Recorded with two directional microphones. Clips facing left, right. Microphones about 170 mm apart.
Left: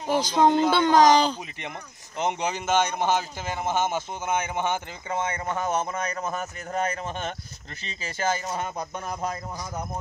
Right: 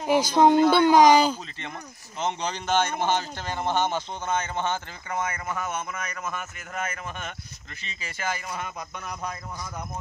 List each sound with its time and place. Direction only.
0.0 s speech: 10° right (ahead or behind)
2.1 s a man's voice: 15° left (ahead or behind); by 9.8 s 30° left (ahead or behind)